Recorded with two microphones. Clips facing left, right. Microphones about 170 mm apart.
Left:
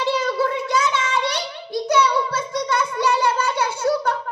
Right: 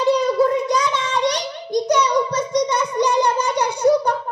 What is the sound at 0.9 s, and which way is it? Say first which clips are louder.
Child singing: right 2 dB; 20° right (ahead or behind).